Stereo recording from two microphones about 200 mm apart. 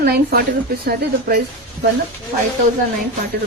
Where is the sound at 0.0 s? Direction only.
50° right (ahead or behind).